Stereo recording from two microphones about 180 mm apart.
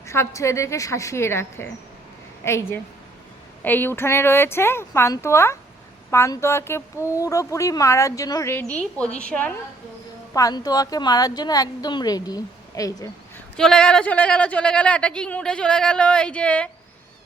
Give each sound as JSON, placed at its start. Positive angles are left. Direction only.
{"t": 0.0, "sound": "speech", "side_deg": 15}
{"t": 10.3, "sound": "a woman's voice", "side_deg": 20}
{"t": 13.6, "sound": "speech", "side_deg": 5}